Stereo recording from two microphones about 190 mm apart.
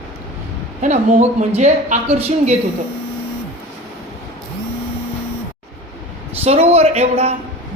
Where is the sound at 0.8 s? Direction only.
40° right (ahead or behind).